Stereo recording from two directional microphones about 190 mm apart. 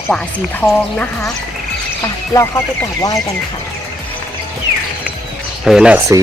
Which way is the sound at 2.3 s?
15° left (ahead or behind).